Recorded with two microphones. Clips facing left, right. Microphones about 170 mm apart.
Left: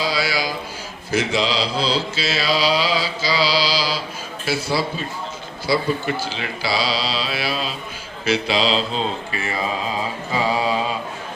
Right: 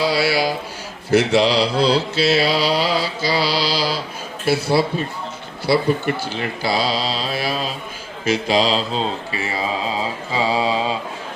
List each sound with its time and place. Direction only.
0.0 s a sound: 65° right (ahead or behind)
1.1 s mantra: 70° right (ahead or behind)
5.6 s speech: 60° right (ahead or behind); by 8.8 s 40° right (ahead or behind)
10.3 s mantra: 25° right (ahead or behind)